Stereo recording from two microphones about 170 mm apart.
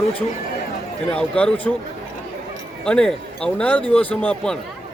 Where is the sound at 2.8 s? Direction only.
5° left (ahead or behind).